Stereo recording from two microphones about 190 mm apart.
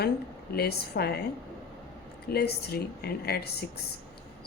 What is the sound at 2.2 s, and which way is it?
Speech, 55° left (ahead or behind).